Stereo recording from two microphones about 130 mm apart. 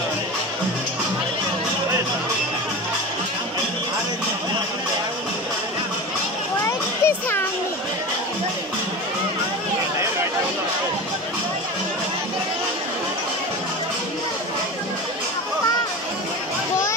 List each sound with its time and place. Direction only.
6.6 s music: 15° left (ahead or behind)